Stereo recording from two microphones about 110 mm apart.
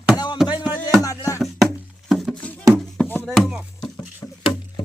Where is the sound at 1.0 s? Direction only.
30° left (ahead or behind).